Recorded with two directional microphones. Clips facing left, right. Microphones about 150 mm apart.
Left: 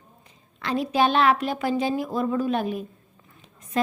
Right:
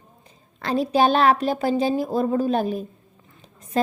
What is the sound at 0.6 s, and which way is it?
A woman's voice, 35° right (ahead or behind).